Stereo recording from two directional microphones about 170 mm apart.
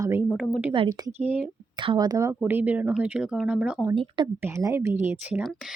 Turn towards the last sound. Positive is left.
turn(degrees=-10)  # may be behind; listen again after turning